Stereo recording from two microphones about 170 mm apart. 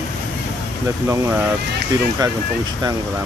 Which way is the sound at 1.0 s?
15° right (ahead or behind).